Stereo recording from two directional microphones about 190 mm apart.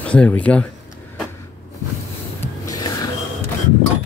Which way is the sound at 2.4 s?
20° left (ahead or behind).